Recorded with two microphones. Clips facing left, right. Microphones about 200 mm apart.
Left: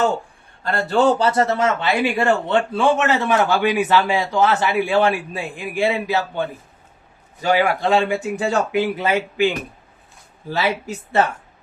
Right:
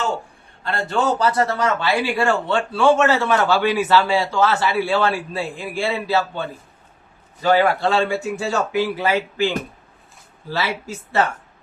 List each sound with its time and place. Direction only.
0.6 s a man's voice: 40° left (ahead or behind); by 6.4 s 15° left (ahead or behind)
7.4 s a man's voice: 15° left (ahead or behind)
10.5 s a man's voice: 15° left (ahead or behind)